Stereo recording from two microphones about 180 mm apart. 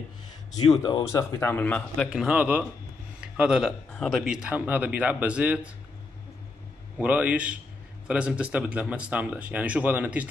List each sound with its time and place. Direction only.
0.6 s a man's voice: 25° left (ahead or behind)
2.0 s speech: 5° right (ahead or behind)
7.0 s speech: 10° right (ahead or behind)